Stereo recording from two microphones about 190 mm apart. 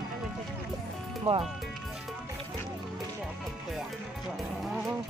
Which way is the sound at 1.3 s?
35° right (ahead or behind).